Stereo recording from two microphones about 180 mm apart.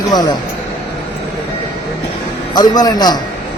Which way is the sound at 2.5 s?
20° left (ahead or behind).